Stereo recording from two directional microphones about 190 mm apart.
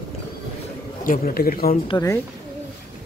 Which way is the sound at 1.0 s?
50° left (ahead or behind).